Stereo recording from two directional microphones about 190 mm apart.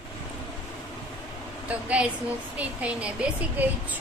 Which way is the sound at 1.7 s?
5° right (ahead or behind).